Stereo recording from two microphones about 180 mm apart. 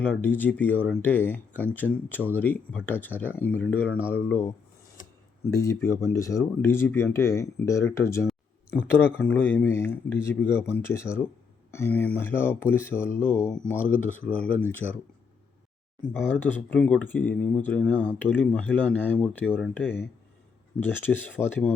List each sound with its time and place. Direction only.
0.0 s speech: 10° left (ahead or behind)
5.0 s a sound: 50° left (ahead or behind)
5.5 s speech: 15° left (ahead or behind)
16.1 s speech: 10° left (ahead or behind)